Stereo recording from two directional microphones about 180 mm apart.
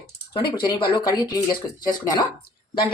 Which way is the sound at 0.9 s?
20° left (ahead or behind).